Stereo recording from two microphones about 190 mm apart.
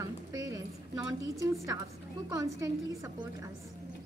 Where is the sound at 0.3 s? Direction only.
20° right (ahead or behind).